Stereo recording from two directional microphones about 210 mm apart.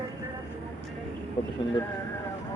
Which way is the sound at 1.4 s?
20° left (ahead or behind).